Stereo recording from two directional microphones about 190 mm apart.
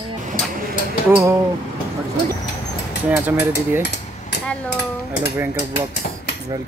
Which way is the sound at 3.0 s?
10° right (ahead or behind).